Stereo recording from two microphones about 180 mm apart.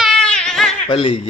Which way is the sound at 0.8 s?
30° left (ahead or behind).